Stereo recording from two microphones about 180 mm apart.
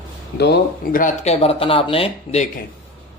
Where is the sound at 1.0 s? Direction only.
35° left (ahead or behind).